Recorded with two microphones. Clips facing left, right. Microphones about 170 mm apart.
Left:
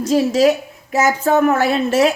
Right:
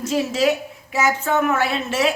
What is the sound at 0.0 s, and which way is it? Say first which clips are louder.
A woman's voice: left 6 dB; 40° left (ahead or behind).